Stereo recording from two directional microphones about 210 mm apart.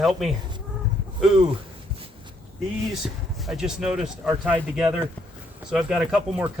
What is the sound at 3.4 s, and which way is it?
Speech, 5° right (ahead or behind).